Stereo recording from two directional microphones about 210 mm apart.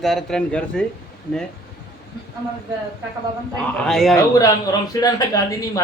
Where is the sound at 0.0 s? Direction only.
Centre (ahead or behind).